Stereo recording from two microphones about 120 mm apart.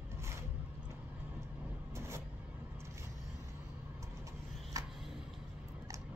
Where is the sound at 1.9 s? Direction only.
20° right (ahead or behind).